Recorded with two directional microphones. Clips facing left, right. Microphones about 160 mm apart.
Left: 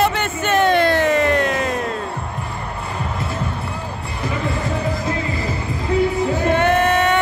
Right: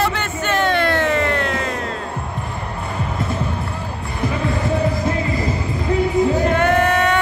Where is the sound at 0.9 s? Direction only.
15° left (ahead or behind).